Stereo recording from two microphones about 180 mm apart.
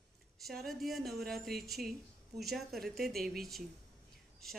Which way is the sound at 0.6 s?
Centre (ahead or behind).